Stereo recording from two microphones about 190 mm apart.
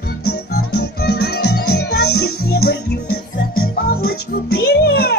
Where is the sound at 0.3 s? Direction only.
60° left (ahead or behind).